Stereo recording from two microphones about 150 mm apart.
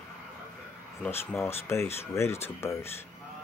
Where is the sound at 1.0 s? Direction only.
10° left (ahead or behind).